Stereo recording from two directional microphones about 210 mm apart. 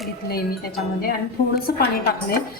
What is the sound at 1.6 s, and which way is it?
Speech, 45° left (ahead or behind).